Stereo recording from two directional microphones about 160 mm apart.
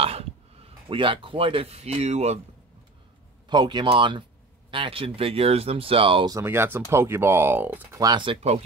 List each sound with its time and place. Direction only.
0.0 s speech: 40° right (ahead or behind)
3.4 s speech: 30° right (ahead or behind)
6.3 s speech: 15° right (ahead or behind)
8.0 s speech: 30° right (ahead or behind)